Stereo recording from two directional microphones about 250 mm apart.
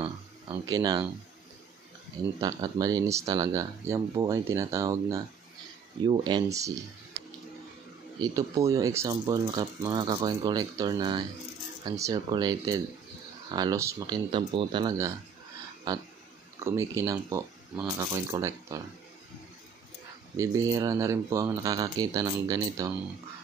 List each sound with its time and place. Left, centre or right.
0.0 s a sound: centre
2.4 s speech: centre
8.2 s speech: centre
20.3 s speech: centre